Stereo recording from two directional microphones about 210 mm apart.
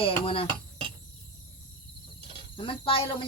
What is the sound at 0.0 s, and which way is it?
Speech, 25° left (ahead or behind).